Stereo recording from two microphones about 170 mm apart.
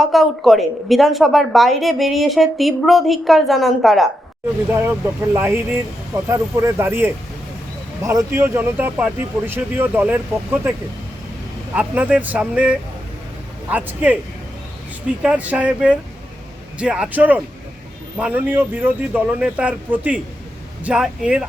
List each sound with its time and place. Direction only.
0.1 s a woman's voice: centre (ahead or behind)
4.7 s speech: 10° right (ahead or behind)
11.7 s speech: 10° right (ahead or behind)
15.2 s a woman's voice: 10° right (ahead or behind)